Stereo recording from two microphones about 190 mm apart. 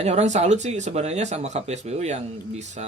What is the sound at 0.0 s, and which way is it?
Speech, 35° right (ahead or behind).